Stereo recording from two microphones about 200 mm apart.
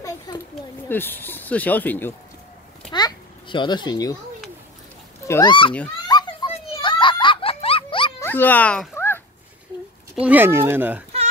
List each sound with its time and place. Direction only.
0.3 s children playing: 20° left (ahead or behind)
0.8 s speech: 10° left (ahead or behind)
2.9 s babbling: 20° left (ahead or behind)
5.2 s speech: 20° left (ahead or behind)
6.0 s children playing: 20° left (ahead or behind)
6.5 s a sound: 25° left (ahead or behind)
8.2 s a sound: 10° left (ahead or behind)
10.2 s speech: 10° right (ahead or behind)